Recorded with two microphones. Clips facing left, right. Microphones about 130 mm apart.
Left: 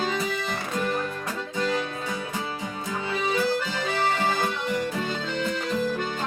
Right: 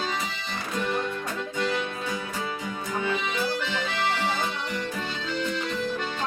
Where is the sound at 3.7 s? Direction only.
45° left (ahead or behind).